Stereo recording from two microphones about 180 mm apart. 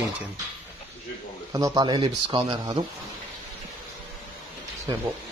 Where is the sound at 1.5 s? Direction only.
20° right (ahead or behind).